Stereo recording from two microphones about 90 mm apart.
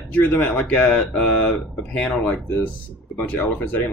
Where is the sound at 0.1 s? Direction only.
15° left (ahead or behind).